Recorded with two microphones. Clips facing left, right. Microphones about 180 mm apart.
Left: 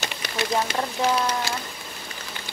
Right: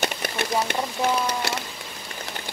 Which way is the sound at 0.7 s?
5° right (ahead or behind).